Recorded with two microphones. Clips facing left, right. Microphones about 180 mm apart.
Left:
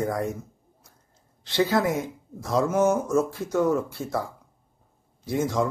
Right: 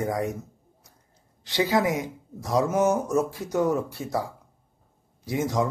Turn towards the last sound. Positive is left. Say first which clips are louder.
# left 1 dB
turn(degrees=-20)  # may be behind; listen again after turning